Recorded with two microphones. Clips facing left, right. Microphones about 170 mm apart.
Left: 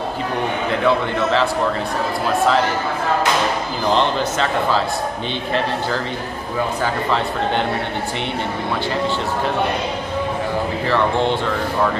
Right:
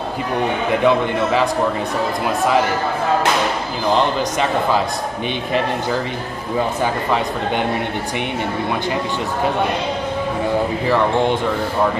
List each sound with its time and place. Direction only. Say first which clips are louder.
0.8 s a man's voice: right 1 dB; 15° right (ahead or behind)
3.9 s a man's voice: right 1 dB; 15° right (ahead or behind)
6.8 s a man's voice: right 1 dB; 10° right (ahead or behind)